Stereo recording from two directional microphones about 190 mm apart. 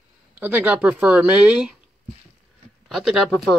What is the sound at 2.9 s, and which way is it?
Speech, centre (ahead or behind).